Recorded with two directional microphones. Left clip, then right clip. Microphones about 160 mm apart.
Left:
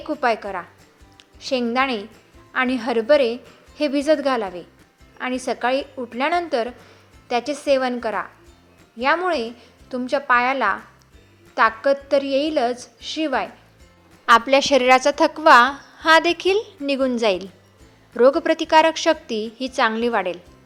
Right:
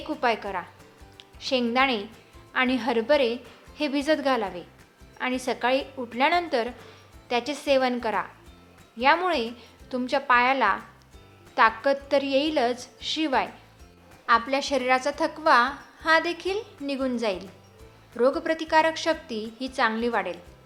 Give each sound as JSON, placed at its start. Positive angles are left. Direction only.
{"t": 0.1, "sound": "a woman's voice", "side_deg": 25}
{"t": 14.3, "sound": "a woman's voice", "side_deg": 60}